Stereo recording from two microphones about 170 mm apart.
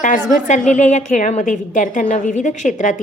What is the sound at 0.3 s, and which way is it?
A woman's voice, 45° left (ahead or behind).